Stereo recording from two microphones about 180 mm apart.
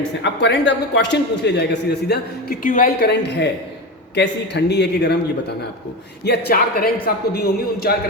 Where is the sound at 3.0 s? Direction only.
65° left (ahead or behind).